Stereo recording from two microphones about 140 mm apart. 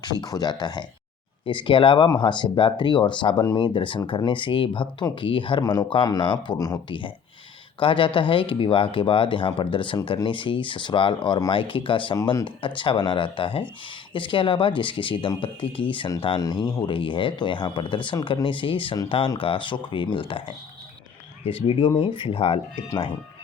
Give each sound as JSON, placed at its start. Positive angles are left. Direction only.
{"t": 0.0, "sound": "speech", "side_deg": 30}
{"t": 7.8, "sound": "speech", "side_deg": 35}
{"t": 21.4, "sound": "speech", "side_deg": 40}